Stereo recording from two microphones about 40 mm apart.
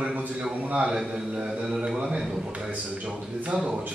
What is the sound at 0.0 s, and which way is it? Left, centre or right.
Speech, right.